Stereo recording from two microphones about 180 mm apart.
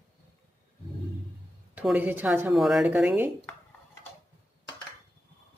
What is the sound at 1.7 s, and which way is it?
Speech, 10° right (ahead or behind).